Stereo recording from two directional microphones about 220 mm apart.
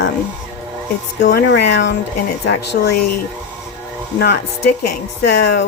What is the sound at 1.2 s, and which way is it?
Speech, 50° left (ahead or behind).